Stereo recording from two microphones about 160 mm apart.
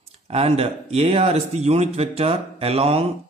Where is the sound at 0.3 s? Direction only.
40° right (ahead or behind).